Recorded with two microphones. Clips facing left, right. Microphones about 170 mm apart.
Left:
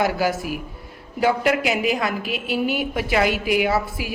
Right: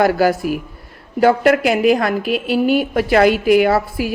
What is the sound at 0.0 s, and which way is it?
A woman's voice, 50° right (ahead or behind).